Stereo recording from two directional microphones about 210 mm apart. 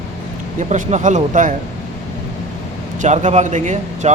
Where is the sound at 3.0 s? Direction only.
35° right (ahead or behind).